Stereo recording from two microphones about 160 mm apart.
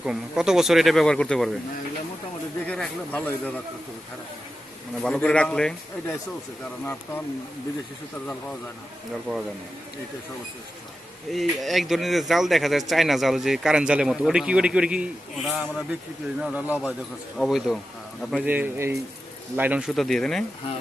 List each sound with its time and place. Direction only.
0.0 s speech: 5° right (ahead or behind)
2.6 s a man's voice: 5° left (ahead or behind)
4.9 s speech: 5° left (ahead or behind)
11.3 s speech: centre (ahead or behind)
18.4 s a man's voice: 10° right (ahead or behind)
19.9 s speech: centre (ahead or behind)